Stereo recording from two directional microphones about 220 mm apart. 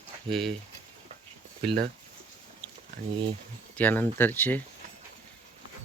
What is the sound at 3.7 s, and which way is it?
Speech, 10° left (ahead or behind).